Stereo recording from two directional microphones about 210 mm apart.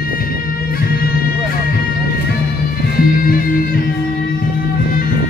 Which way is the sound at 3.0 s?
45° left (ahead or behind).